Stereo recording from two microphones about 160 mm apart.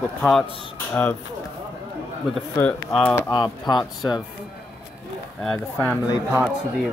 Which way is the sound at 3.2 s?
25° left (ahead or behind).